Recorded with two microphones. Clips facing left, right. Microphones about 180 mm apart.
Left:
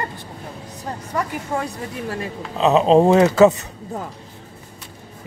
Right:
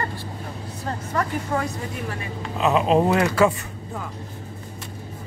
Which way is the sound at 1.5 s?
25° left (ahead or behind).